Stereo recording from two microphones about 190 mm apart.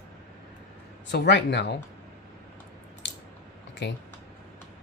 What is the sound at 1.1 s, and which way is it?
Speech, 65° left (ahead or behind).